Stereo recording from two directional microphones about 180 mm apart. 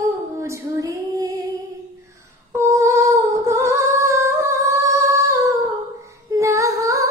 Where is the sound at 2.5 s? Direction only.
15° right (ahead or behind).